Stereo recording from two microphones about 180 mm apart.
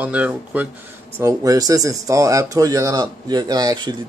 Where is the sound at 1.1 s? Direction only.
20° right (ahead or behind).